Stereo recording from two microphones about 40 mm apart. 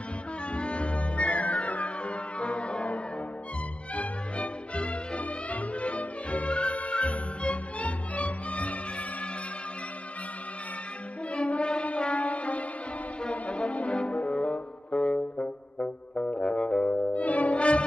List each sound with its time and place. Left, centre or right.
0.5 s music: left
11.3 s music: left